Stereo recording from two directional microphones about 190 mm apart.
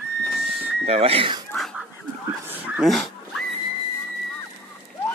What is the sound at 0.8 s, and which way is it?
Speech, 30° right (ahead or behind).